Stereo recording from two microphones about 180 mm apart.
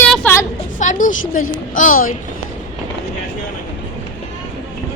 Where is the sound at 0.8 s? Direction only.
45° left (ahead or behind).